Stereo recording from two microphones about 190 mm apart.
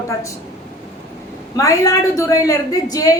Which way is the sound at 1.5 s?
20° left (ahead or behind).